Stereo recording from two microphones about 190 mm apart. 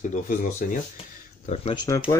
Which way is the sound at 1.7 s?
15° left (ahead or behind).